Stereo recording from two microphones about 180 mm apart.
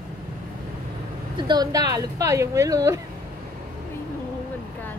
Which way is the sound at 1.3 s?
25° right (ahead or behind).